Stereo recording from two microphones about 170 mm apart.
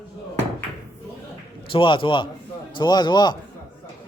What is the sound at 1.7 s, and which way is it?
A man's voice, 30° left (ahead or behind).